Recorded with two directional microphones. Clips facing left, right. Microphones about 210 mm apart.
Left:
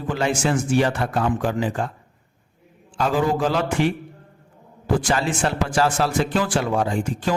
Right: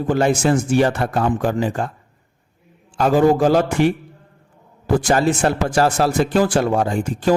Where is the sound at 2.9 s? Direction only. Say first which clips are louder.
Right 6 dB; 45° right (ahead or behind).